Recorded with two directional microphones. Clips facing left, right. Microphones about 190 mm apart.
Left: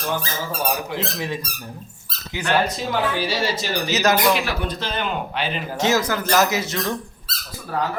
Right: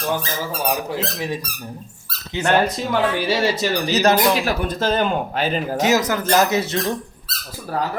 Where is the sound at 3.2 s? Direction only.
55° right (ahead or behind).